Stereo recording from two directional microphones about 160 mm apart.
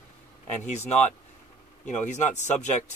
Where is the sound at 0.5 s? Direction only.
45° left (ahead or behind).